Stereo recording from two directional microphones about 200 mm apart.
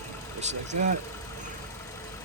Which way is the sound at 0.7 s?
35° right (ahead or behind).